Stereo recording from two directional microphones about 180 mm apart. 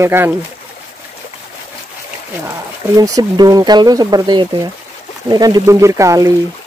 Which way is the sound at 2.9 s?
20° right (ahead or behind).